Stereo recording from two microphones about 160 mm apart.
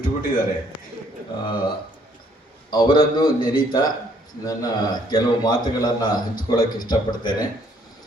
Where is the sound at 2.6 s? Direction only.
30° left (ahead or behind).